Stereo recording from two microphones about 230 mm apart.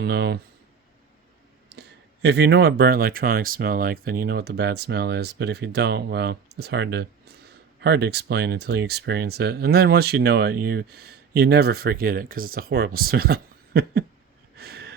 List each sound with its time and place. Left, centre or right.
0.0 s speech: right
1.7 s clicking: right
2.2 s speech: right
14.5 s wheeze: right